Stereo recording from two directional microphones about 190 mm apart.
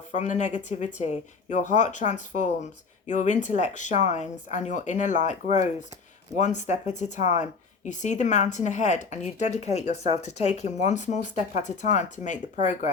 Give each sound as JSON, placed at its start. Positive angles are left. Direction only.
{"t": 0.1, "sound": "speech", "side_deg": 40}